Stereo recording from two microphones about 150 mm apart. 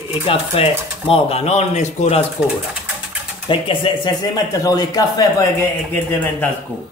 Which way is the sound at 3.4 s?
35° left (ahead or behind).